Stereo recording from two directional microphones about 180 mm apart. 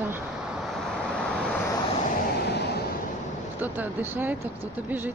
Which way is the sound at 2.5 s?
65° left (ahead or behind).